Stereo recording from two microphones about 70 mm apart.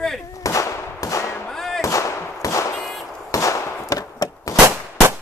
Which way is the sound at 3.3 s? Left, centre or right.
Left.